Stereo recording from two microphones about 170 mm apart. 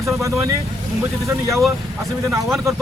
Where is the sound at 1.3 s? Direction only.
15° right (ahead or behind).